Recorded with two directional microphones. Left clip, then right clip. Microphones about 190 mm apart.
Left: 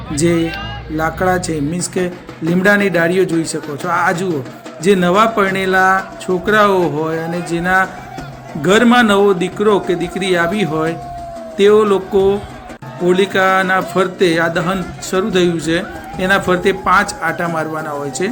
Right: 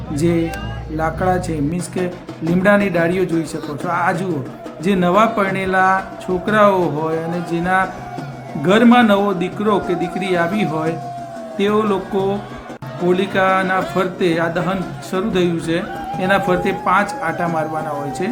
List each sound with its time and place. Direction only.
0.2 s speech: 5° left (ahead or behind)